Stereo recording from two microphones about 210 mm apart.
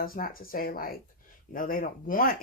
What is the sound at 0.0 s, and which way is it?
Speech, 45° left (ahead or behind).